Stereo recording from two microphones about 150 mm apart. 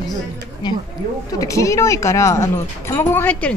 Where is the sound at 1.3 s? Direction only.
20° left (ahead or behind).